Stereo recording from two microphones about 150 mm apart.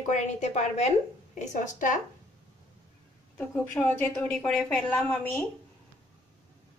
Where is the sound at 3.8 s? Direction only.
20° left (ahead or behind).